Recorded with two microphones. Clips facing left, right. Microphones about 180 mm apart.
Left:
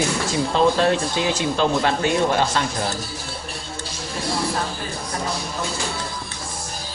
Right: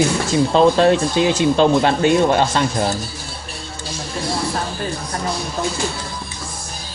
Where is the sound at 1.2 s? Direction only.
25° right (ahead or behind).